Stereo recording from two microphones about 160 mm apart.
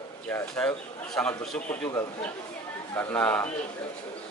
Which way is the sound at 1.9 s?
20° left (ahead or behind).